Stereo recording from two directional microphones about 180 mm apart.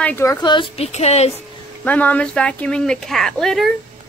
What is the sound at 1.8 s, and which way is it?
A woman's voice, 10° left (ahead or behind).